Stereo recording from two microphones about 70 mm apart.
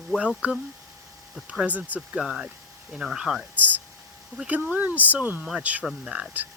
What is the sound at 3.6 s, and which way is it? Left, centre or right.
Speech, right.